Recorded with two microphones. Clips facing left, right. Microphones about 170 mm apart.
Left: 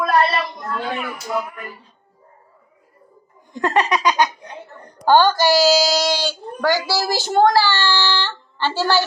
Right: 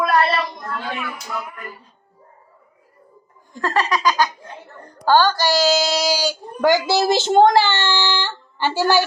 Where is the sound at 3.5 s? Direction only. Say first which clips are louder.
Left 2 dB; 20° left (ahead or behind).